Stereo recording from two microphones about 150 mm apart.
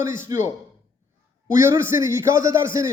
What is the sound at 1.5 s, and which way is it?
A man's voice, 20° right (ahead or behind).